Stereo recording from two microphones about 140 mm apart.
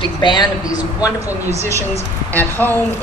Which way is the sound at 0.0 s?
35° left (ahead or behind).